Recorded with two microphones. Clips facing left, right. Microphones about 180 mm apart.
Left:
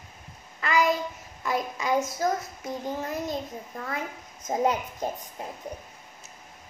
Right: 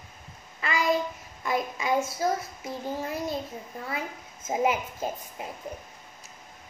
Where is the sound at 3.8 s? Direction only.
5° right (ahead or behind).